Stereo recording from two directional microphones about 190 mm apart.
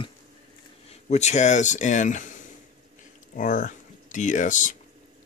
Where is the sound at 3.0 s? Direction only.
40° left (ahead or behind).